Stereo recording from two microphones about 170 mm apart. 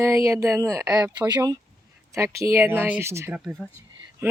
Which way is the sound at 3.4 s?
Centre (ahead or behind).